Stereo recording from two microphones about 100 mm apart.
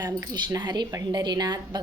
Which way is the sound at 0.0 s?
40° right (ahead or behind).